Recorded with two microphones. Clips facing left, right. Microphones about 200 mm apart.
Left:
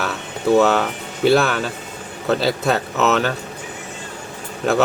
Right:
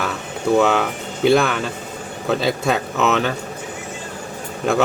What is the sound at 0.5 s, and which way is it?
A man's voice, 5° left (ahead or behind).